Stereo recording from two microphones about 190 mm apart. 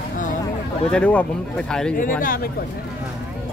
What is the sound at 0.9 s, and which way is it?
Speech, 10° left (ahead or behind).